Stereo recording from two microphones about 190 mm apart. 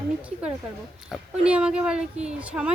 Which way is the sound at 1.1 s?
5° right (ahead or behind).